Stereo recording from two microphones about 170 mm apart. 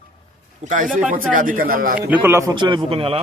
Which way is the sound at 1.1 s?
50° right (ahead or behind).